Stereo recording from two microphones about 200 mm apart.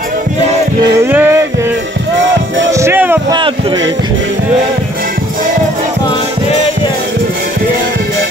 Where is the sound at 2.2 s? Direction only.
70° right (ahead or behind).